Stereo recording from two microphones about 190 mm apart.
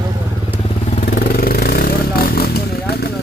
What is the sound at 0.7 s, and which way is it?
Motorcycle, 35° left (ahead or behind).